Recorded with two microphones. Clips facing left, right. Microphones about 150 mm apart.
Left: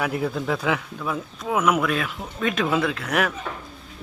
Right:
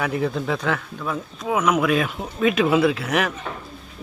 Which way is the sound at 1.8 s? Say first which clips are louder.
Right 4 dB; 10° right (ahead or behind).